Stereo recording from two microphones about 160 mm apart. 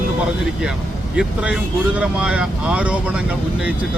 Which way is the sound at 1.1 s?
5° right (ahead or behind).